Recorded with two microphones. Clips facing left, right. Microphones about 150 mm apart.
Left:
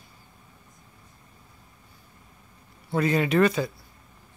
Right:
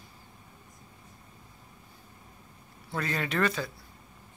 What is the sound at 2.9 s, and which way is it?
Speech, 15° left (ahead or behind).